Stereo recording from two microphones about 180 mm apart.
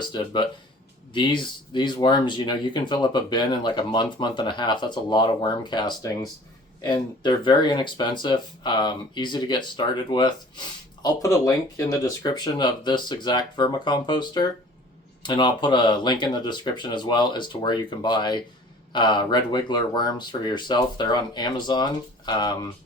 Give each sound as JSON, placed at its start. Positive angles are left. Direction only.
{"t": 0.0, "sound": "speech", "side_deg": 25}